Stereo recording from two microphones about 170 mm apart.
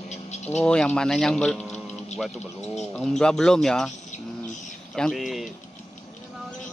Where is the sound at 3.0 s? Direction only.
5° left (ahead or behind).